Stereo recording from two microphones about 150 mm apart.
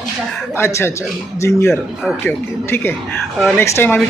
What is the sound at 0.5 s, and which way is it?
Speech, 15° left (ahead or behind).